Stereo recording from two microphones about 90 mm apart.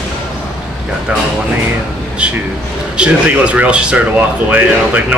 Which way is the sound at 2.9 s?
10° right (ahead or behind).